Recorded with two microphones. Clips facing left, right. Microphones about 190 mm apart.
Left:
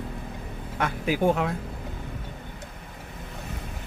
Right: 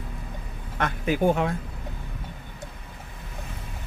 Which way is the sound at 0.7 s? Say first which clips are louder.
Right 1 dB; 10° left (ahead or behind).